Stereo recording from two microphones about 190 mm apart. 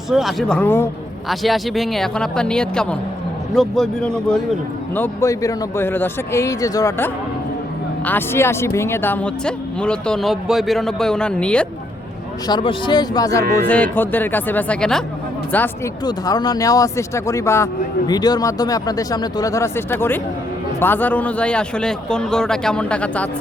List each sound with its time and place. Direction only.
0.1 s speech: centre (ahead or behind)
1.3 s speech: centre (ahead or behind)
4.9 s a man's voice: 15° left (ahead or behind)
12.5 s speech: 25° left (ahead or behind)
13.6 s a man's voice: 10° left (ahead or behind)
16.0 s a man's voice: 20° left (ahead or behind)